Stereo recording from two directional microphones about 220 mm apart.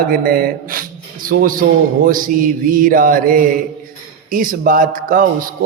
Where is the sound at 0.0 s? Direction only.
40° right (ahead or behind).